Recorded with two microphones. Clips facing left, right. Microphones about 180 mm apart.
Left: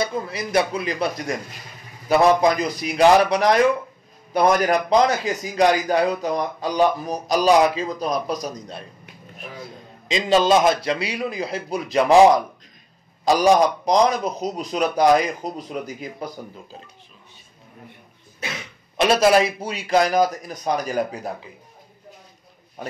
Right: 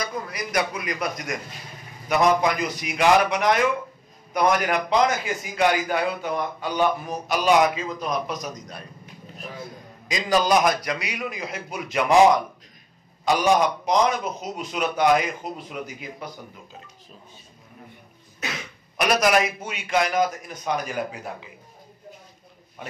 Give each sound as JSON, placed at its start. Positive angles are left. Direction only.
{"t": 0.0, "sound": "a man's voice", "side_deg": 25}
{"t": 10.0, "sound": "a man's voice", "side_deg": 25}
{"t": 13.2, "sound": "a man's voice", "side_deg": 35}
{"t": 18.9, "sound": "a man's voice", "side_deg": 25}
{"t": 22.8, "sound": "speech", "side_deg": 40}